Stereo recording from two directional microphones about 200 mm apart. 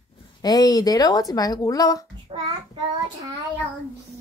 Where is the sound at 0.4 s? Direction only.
20° left (ahead or behind).